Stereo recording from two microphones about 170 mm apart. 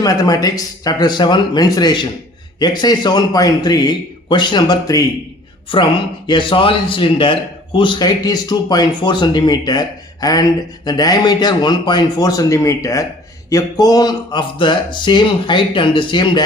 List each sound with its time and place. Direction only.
0.0 s a man's voice: 20° left (ahead or behind)